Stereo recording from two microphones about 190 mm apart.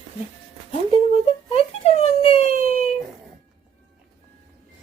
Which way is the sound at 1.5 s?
35° left (ahead or behind).